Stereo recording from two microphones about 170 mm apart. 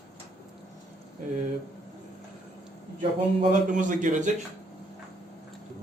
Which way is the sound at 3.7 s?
50° right (ahead or behind).